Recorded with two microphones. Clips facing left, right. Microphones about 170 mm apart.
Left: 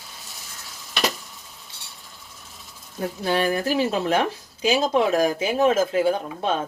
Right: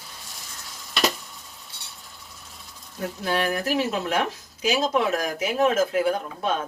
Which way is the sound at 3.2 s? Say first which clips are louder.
Left 3 dB; 30° left (ahead or behind).